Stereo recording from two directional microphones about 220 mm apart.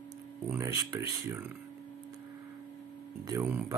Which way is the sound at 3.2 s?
15° right (ahead or behind).